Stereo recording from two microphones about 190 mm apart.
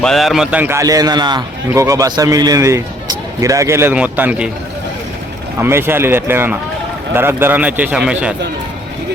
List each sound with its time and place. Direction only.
0.0 s a man's voice: centre (ahead or behind)
5.5 s a man's voice: 10° right (ahead or behind)